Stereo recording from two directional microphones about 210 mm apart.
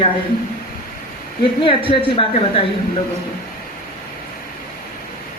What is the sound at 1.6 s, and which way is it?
A woman's voice, 25° left (ahead or behind).